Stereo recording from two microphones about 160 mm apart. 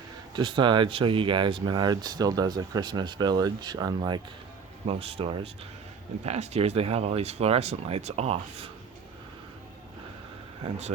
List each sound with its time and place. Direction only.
0.3 s speech: 30° right (ahead or behind)
4.9 s speech: 35° right (ahead or behind)
10.6 s speech: 45° right (ahead or behind)